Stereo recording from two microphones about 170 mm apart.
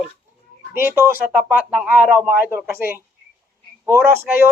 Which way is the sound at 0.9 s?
15° right (ahead or behind).